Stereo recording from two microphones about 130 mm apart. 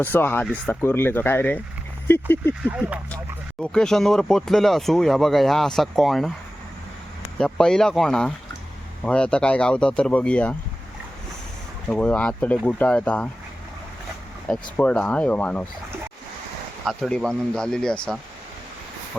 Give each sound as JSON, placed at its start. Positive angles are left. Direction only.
{"t": 0.0, "sound": "speech", "side_deg": 15}
{"t": 2.6, "sound": "speech", "side_deg": -10}
{"t": 3.6, "sound": "speech", "side_deg": 5}
{"t": 7.3, "sound": "speech", "side_deg": 5}
{"t": 11.9, "sound": "speech", "side_deg": 10}
{"t": 14.4, "sound": "speech", "side_deg": 5}
{"t": 16.8, "sound": "speech", "side_deg": 0}